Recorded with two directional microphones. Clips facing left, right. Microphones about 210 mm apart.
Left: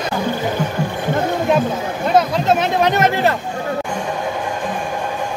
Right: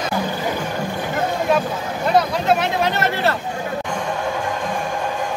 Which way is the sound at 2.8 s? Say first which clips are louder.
Left 4 dB; 15° left (ahead or behind).